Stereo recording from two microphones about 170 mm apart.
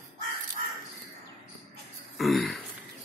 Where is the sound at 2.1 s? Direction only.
Centre (ahead or behind).